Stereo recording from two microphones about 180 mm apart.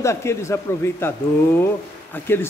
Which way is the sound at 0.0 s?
15° left (ahead or behind).